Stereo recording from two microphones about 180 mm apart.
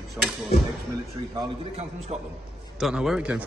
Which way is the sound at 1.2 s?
25° right (ahead or behind).